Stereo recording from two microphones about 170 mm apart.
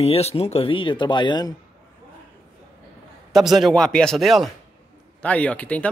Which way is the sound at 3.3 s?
Centre (ahead or behind).